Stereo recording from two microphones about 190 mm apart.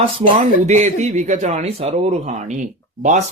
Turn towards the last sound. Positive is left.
turn(degrees=-40)  # may be behind; listen again after turning